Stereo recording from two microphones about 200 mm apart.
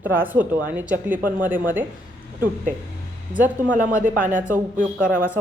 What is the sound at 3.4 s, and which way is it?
Speech, 10° right (ahead or behind).